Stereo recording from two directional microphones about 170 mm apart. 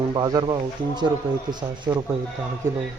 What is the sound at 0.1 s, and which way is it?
Speech, 25° right (ahead or behind).